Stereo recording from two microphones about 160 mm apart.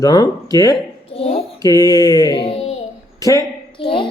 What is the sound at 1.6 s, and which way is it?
Speech, 20° left (ahead or behind).